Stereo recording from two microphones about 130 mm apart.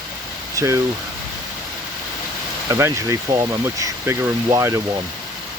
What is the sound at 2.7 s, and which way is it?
Speech, 25° right (ahead or behind).